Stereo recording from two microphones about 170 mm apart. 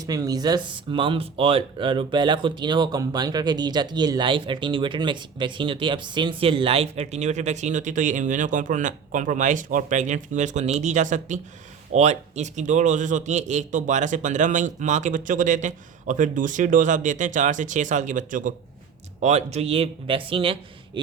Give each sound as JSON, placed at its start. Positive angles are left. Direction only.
{"t": 0.0, "sound": "a man's voice", "side_deg": -20}